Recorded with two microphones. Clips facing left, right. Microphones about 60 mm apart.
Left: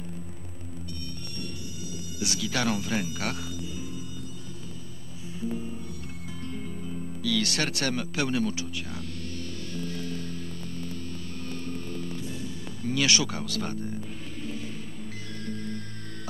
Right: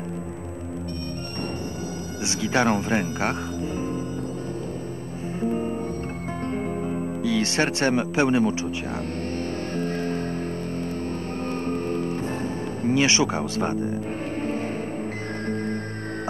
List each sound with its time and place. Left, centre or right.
2.2 s speech: right
5.4 s music: right
7.2 s speech: right
9.8 s music: right
11.6 s music: right
12.8 s speech: right